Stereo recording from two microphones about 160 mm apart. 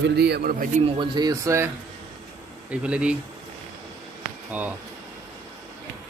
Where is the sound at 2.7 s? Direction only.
5° right (ahead or behind).